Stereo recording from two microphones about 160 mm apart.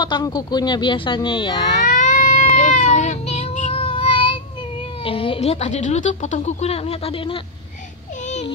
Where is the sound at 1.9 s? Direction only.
55° left (ahead or behind); by 7.4 s 35° left (ahead or behind).